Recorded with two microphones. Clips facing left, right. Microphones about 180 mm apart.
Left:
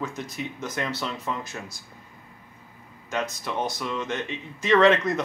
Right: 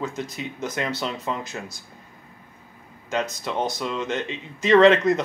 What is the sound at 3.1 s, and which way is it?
Speech, 20° right (ahead or behind).